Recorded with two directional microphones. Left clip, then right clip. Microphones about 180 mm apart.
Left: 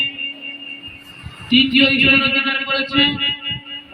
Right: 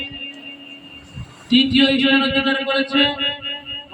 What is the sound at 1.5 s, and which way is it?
A man's voice, 35° right (ahead or behind).